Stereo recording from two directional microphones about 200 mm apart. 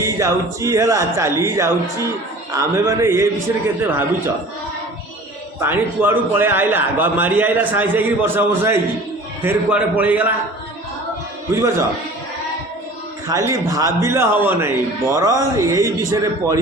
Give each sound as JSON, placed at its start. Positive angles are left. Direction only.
{"t": 0.0, "sound": "a man's voice", "side_deg": -15}
{"t": 5.5, "sound": "a man's voice", "side_deg": -10}
{"t": 11.5, "sound": "a man's voice", "side_deg": -15}
{"t": 13.2, "sound": "a man's voice", "side_deg": -15}